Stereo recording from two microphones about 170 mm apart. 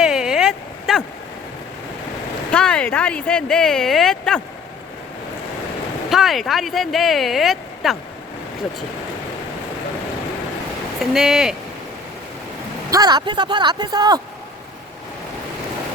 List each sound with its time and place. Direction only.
0.0 s a sound: 5° right (ahead or behind)
2.5 s speech: 5° left (ahead or behind)
6.1 s speech: centre (ahead or behind)
11.0 s speech: centre (ahead or behind)
12.9 s speech: 25° right (ahead or behind)